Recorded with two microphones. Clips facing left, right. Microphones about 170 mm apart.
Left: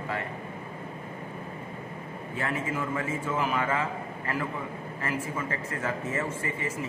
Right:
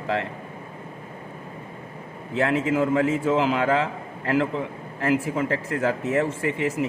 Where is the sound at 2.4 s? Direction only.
85° right.